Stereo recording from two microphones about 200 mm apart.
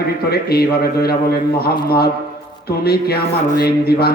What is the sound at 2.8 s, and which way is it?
A man's voice, 50° left (ahead or behind).